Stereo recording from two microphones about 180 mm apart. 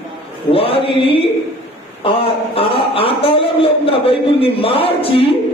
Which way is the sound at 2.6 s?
30° left (ahead or behind).